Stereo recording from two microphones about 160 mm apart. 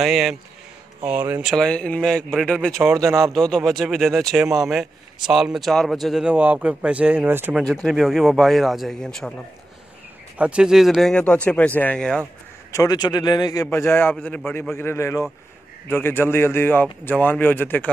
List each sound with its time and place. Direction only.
0.0 s a man's voice: centre (ahead or behind)
1.4 s a man's voice: centre (ahead or behind)
2.8 s speech: 20° right (ahead or behind)
3.3 s a man's voice: 5° left (ahead or behind); by 7.6 s 15° right (ahead or behind)
7.6 s a man's voice: centre (ahead or behind)
10.3 s a man's voice: 5° right (ahead or behind)
12.7 s a man's voice: 25° left (ahead or behind)